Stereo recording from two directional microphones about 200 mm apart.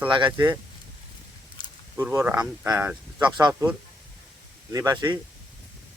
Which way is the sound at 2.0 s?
10° right (ahead or behind).